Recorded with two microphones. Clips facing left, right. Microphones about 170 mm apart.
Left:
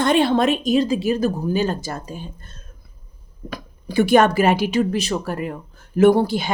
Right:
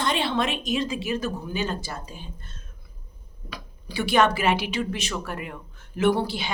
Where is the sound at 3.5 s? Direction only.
50° left (ahead or behind).